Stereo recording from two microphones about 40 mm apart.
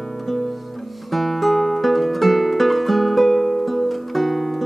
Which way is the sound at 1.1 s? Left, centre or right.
Centre.